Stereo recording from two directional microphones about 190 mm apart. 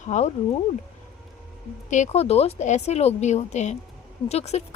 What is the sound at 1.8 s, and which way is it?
A woman's voice, 40° left (ahead or behind).